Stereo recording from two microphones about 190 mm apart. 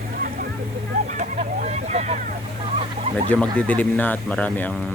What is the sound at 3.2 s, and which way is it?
Speech, 5° left (ahead or behind).